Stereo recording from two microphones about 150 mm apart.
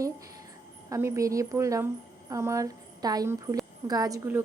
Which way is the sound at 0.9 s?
20° right (ahead or behind).